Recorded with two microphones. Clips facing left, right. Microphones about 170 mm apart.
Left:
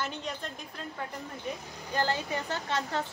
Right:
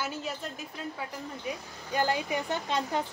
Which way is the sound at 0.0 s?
5° right (ahead or behind).